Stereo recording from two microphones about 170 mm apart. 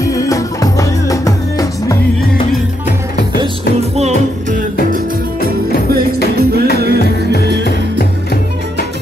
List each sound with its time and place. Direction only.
0.0 s music: 20° left (ahead or behind)
3.9 s music: 45° right (ahead or behind)
6.3 s music: 65° right (ahead or behind)
7.6 s music: 60° left (ahead or behind)